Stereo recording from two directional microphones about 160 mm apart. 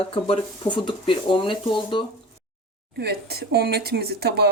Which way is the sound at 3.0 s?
85° right.